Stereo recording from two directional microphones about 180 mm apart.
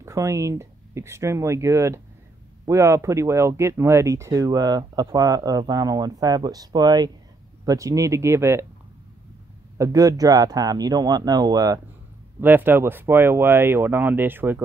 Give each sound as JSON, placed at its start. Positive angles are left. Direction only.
{"t": 0.0, "sound": "speech", "side_deg": -15}
{"t": 9.8, "sound": "speech", "side_deg": -20}